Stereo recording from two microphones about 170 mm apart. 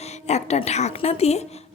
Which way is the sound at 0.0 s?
40° left (ahead or behind).